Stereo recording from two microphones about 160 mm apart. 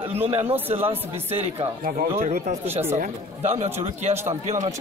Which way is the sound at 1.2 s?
40° right (ahead or behind).